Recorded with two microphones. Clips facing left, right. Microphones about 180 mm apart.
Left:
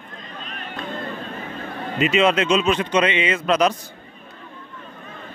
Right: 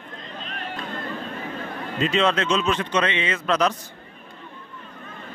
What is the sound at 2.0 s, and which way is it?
A man's voice, 10° left (ahead or behind).